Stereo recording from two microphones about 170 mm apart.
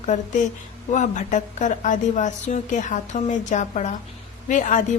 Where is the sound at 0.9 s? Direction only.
45° left (ahead or behind).